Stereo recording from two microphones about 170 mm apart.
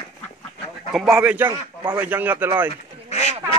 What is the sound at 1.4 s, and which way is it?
Speech, 25° right (ahead or behind).